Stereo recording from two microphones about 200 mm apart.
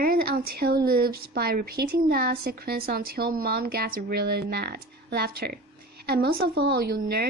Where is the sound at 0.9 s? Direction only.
50° right (ahead or behind).